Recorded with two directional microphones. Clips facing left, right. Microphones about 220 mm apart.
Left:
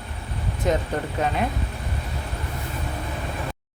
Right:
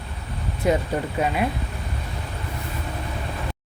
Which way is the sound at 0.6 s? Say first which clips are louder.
Right 2 dB; 10° right (ahead or behind).